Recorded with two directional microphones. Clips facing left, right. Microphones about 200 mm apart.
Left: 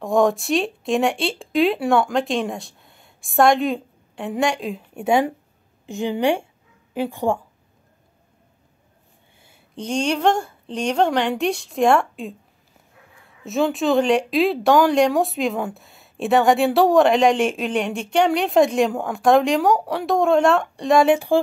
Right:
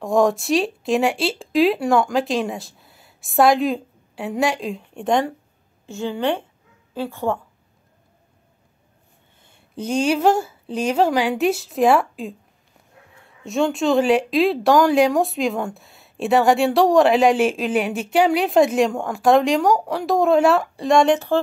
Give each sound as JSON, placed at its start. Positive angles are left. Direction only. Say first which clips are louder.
{"t": 0.0, "sound": "a woman's voice", "louder": "even", "side_deg": 0}
{"t": 9.4, "sound": "a sound", "louder": "left 1 dB", "side_deg": 5}
{"t": 9.8, "sound": "speech", "louder": "right 2 dB", "side_deg": -5}